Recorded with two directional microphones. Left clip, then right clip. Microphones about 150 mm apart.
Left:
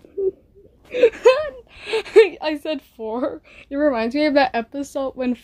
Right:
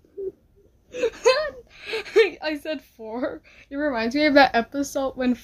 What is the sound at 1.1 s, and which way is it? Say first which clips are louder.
Speech: left 5 dB; 10° left (ahead or behind).